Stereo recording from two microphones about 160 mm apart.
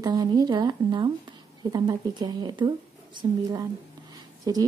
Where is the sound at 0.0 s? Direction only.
25° right (ahead or behind).